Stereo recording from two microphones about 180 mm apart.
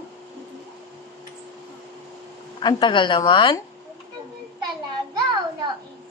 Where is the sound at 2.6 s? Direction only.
25° left (ahead or behind).